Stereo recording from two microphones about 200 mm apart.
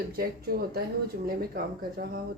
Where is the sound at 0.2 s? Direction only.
50° right (ahead or behind).